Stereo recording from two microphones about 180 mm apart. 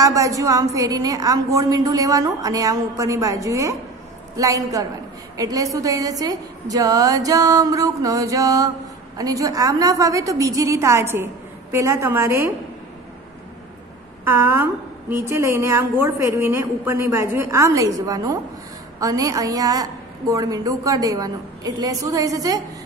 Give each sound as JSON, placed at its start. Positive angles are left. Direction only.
{"t": 0.0, "sound": "a woman's voice", "side_deg": -20}
{"t": 14.2, "sound": "a woman's voice", "side_deg": -15}